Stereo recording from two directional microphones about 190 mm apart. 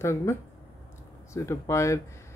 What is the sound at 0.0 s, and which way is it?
Speech, 15° left (ahead or behind).